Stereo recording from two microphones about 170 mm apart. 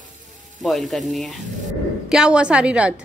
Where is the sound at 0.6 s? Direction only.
Centre (ahead or behind).